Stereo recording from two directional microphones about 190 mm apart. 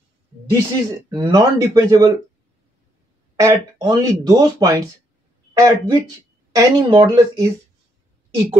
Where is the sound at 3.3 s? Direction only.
20° right (ahead or behind).